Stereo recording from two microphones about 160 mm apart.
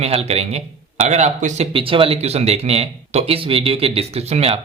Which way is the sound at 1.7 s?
35° right (ahead or behind).